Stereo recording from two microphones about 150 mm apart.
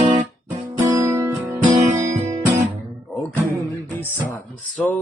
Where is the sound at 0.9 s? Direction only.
20° right (ahead or behind).